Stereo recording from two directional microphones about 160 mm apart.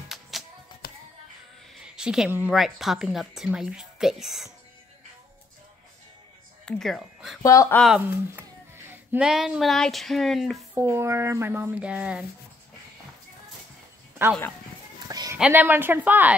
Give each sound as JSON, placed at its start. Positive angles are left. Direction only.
{"t": 0.3, "sound": "music", "side_deg": 0}
{"t": 0.8, "sound": "music", "side_deg": 70}
{"t": 1.7, "sound": "speech", "side_deg": -5}
{"t": 6.6, "sound": "speech", "side_deg": 0}
{"t": 7.4, "sound": "speech", "side_deg": 20}
{"t": 7.7, "sound": "speech", "side_deg": 0}
{"t": 8.0, "sound": "speech", "side_deg": -10}
{"t": 10.7, "sound": "speech", "side_deg": -15}
{"t": 14.2, "sound": "speech", "side_deg": -15}
{"t": 15.0, "sound": "a sound", "side_deg": -20}
{"t": 15.3, "sound": "speech", "side_deg": -5}